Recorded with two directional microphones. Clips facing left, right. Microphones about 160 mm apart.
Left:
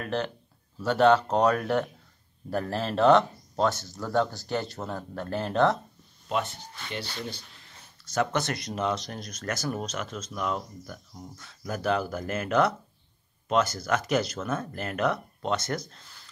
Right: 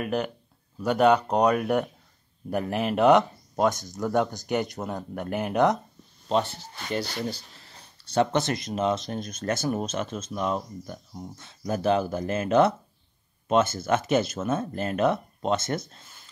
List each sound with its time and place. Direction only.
0.0 s speech: 10° right (ahead or behind)
7.2 s speech: 35° right (ahead or behind); by 16.3 s 20° right (ahead or behind)